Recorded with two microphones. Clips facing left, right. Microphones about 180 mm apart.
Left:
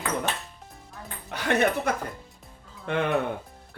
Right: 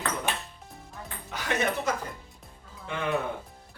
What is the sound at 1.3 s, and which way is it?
A woman's voice, 60° left (ahead or behind).